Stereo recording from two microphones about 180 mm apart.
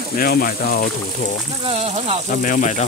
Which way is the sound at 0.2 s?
55° left (ahead or behind).